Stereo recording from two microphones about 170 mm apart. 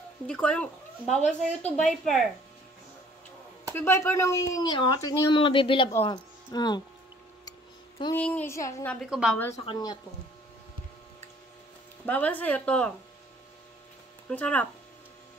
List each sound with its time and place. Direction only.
0.3 s speech: 5° left (ahead or behind)
1.1 s a woman's voice: 40° left (ahead or behind)
1.8 s speech: centre (ahead or behind)
3.7 s speech: 15° left (ahead or behind)
8.1 s a woman's voice: 10° left (ahead or behind)
9.0 s speech: centre (ahead or behind)
9.7 s speech: 20° left (ahead or behind)
12.1 s a woman's voice: 10° left (ahead or behind)
14.3 s a woman's voice: 10° left (ahead or behind)